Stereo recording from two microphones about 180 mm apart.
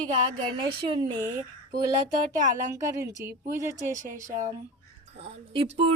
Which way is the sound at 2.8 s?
15° right (ahead or behind).